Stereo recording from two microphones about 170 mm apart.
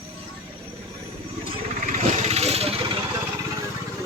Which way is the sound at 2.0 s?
40° right (ahead or behind).